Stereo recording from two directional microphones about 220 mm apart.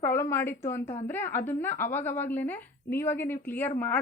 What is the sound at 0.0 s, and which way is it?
A woman's voice, 10° left (ahead or behind).